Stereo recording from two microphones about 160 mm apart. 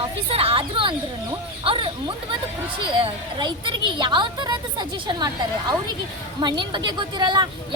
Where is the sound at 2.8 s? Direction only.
30° right (ahead or behind).